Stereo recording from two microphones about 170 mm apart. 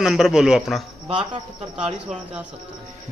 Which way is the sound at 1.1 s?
30° right (ahead or behind).